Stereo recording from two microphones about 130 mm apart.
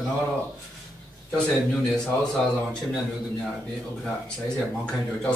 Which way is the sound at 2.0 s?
5° left (ahead or behind).